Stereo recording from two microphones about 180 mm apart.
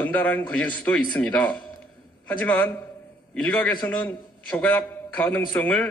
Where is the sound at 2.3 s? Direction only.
10° left (ahead or behind).